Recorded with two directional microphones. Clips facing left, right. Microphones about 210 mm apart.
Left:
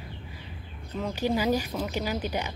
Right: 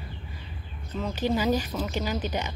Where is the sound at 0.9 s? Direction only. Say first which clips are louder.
Right 1 dB; 10° left (ahead or behind).